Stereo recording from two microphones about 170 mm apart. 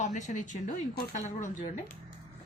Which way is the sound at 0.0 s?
45° left (ahead or behind).